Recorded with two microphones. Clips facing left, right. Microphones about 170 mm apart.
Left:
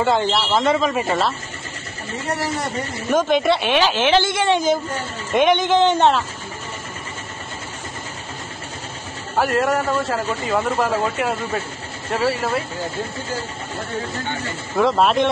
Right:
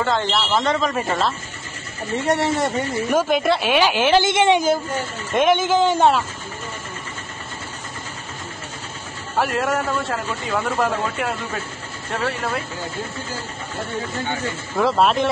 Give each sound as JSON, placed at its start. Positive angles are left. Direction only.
{"t": 0.0, "sound": "a man's voice", "side_deg": 10}
{"t": 0.5, "sound": "speech", "side_deg": 0}
{"t": 2.2, "sound": "speech", "side_deg": -30}
{"t": 3.1, "sound": "a woman's voice", "side_deg": -5}
{"t": 4.3, "sound": "a woman's voice", "side_deg": -25}
{"t": 5.3, "sound": "speech", "side_deg": 0}
{"t": 9.4, "sound": "speech", "side_deg": 0}
{"t": 14.8, "sound": "speech", "side_deg": 0}